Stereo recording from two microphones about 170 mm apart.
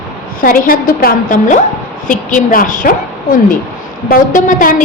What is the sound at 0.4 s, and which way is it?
A woman's voice, 55° left (ahead or behind).